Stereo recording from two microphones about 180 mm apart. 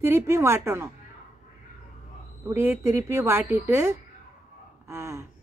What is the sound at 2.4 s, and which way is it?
Speech, 15° right (ahead or behind).